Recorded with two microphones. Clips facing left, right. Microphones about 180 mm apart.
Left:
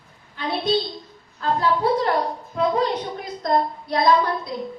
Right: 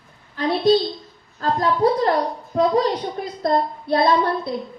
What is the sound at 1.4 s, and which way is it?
A woman's voice, 40° right (ahead or behind).